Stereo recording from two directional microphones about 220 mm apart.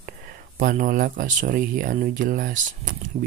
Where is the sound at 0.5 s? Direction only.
40° right (ahead or behind).